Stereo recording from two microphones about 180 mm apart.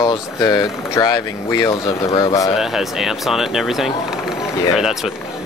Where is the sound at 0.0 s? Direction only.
20° left (ahead or behind).